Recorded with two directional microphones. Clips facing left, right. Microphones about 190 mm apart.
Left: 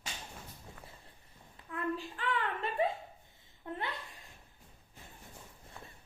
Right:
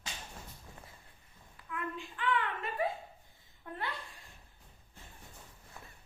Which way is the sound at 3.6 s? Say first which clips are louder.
Left 4 dB; 25° left (ahead or behind).